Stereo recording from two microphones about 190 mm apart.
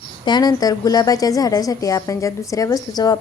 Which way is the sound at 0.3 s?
20° left (ahead or behind).